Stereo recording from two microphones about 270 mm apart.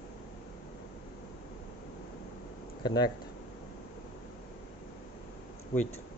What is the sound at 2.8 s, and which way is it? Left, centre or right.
Speech, centre.